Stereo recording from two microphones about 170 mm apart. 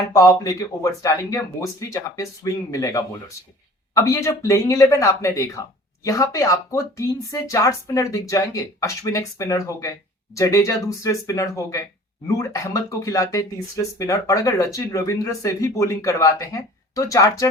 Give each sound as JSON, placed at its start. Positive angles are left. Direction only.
{"t": 0.1, "sound": "speech", "side_deg": 20}